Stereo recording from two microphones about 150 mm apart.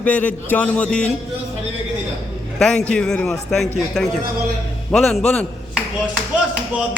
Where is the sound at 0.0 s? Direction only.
10° left (ahead or behind).